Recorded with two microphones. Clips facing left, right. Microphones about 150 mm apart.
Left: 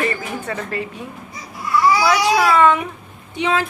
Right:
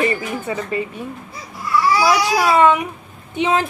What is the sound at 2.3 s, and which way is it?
Speech, 15° right (ahead or behind).